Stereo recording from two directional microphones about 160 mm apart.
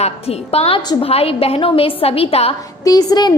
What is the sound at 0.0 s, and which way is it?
A woman's voice, 40° left (ahead or behind).